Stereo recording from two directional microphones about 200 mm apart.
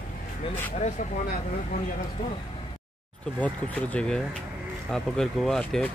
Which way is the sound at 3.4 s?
5° left (ahead or behind).